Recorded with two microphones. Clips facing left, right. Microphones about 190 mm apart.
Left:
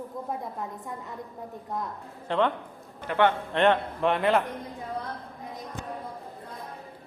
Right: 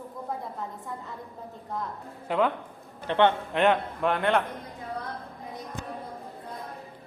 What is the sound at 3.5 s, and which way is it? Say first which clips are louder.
Speech: left 1 dB; centre (ahead or behind).